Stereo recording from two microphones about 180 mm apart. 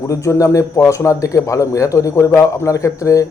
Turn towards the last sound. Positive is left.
turn(degrees=20)  # may be behind; listen again after turning